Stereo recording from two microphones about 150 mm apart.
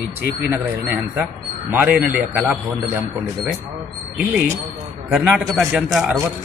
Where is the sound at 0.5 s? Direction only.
10° right (ahead or behind).